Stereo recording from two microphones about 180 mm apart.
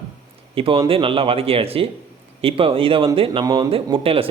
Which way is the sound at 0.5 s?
30° right (ahead or behind).